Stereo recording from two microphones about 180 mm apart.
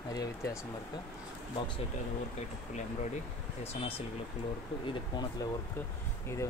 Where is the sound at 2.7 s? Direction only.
40° left (ahead or behind).